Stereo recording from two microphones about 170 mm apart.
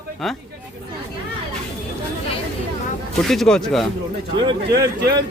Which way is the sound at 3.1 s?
5° left (ahead or behind).